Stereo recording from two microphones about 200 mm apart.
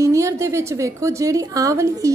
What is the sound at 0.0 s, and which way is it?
A woman's voice, 15° right (ahead or behind).